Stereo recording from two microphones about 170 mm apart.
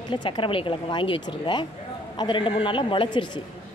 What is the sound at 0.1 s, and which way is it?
A man's voice, 30° left (ahead or behind).